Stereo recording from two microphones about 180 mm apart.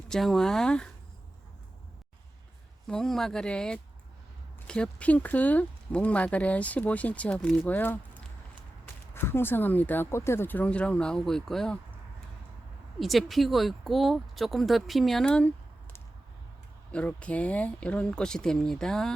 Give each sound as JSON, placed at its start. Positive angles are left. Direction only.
{"t": 0.1, "sound": "speech", "side_deg": 0}
{"t": 2.8, "sound": "speech", "side_deg": 5}
{"t": 13.0, "sound": "speech", "side_deg": 0}